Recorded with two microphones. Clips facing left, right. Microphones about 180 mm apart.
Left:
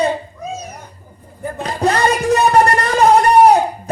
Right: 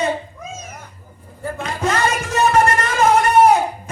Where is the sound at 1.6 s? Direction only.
35° left (ahead or behind).